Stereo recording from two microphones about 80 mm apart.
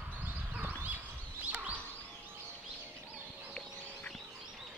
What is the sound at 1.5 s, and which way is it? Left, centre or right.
Turkey, right.